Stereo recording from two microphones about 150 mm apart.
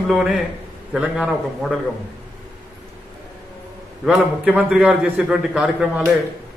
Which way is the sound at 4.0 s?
5° right (ahead or behind).